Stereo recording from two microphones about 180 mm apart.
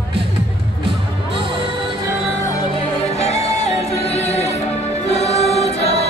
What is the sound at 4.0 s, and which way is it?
Music, 35° left (ahead or behind).